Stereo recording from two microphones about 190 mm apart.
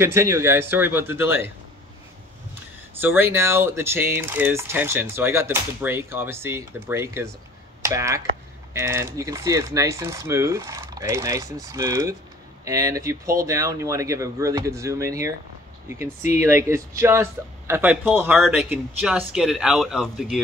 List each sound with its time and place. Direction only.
0.0 s speech: 15° right (ahead or behind)
2.9 s speech: 10° right (ahead or behind)